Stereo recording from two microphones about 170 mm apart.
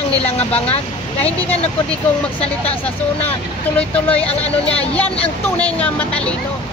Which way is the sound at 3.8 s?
10° left (ahead or behind).